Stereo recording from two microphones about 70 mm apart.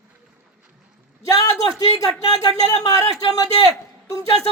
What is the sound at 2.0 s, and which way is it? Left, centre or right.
Speech, left.